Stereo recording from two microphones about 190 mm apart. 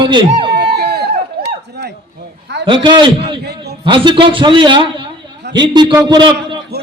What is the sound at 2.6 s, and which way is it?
Music, 25° right (ahead or behind).